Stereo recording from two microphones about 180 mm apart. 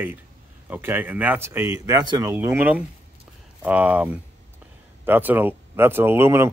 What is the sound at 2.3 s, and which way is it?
Speech, 10° right (ahead or behind).